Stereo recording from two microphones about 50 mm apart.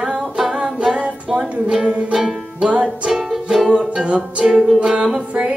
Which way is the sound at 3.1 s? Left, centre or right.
Centre.